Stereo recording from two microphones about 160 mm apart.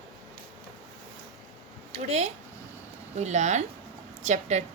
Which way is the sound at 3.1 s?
45° right (ahead or behind).